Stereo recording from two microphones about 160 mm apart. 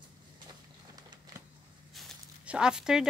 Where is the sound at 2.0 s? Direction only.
5° right (ahead or behind).